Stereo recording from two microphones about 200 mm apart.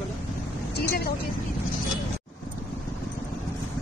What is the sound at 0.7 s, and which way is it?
Vehicle, 50° left (ahead or behind).